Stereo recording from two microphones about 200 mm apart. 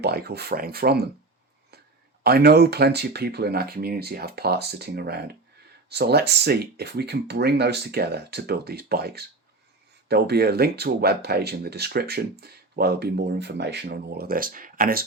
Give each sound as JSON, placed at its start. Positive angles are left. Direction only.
{"t": 0.0, "sound": "speech", "side_deg": -50}
{"t": 2.2, "sound": "speech", "side_deg": -50}